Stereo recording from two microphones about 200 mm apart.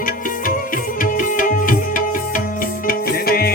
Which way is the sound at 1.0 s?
45° left (ahead or behind).